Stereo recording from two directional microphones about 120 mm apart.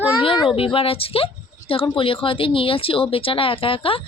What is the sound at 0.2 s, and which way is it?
Speech, 45° left (ahead or behind).